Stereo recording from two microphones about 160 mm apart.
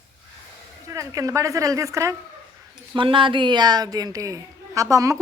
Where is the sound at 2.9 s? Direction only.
30° right (ahead or behind).